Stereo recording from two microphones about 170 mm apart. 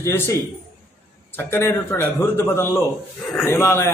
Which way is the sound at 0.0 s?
15° left (ahead or behind).